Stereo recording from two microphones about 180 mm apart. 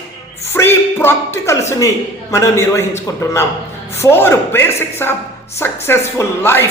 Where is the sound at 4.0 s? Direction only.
15° left (ahead or behind).